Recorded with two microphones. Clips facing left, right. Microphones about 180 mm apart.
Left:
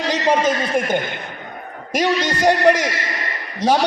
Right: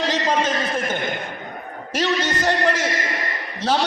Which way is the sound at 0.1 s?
10° left (ahead or behind).